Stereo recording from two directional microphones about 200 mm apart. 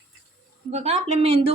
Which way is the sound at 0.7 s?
30° right (ahead or behind).